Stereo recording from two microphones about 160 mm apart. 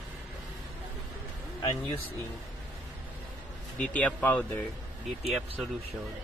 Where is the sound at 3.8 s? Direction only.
10° left (ahead or behind).